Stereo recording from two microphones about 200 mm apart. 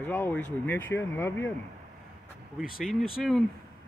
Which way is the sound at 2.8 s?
Centre (ahead or behind).